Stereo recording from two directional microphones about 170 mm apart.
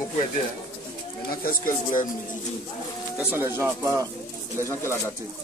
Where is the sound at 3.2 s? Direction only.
10° right (ahead or behind).